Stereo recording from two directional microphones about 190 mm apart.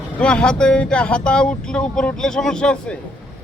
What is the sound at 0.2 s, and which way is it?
Speech, 5° left (ahead or behind).